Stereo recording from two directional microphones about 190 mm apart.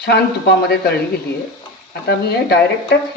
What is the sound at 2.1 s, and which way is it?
Speech, 60° left (ahead or behind).